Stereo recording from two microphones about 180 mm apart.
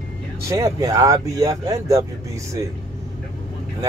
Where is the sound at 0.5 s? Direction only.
20° right (ahead or behind).